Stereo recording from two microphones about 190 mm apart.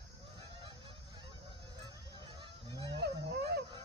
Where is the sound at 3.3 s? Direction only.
55° right (ahead or behind).